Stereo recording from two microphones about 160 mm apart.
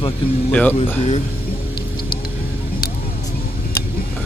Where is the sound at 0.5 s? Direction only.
10° left (ahead or behind).